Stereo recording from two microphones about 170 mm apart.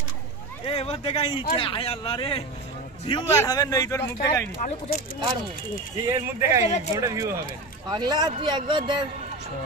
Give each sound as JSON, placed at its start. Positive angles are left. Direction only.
{"t": 0.7, "sound": "speech", "side_deg": 35}
{"t": 3.3, "sound": "speech", "side_deg": 20}
{"t": 4.6, "sound": "speech", "side_deg": 55}
{"t": 5.9, "sound": "speech", "side_deg": -20}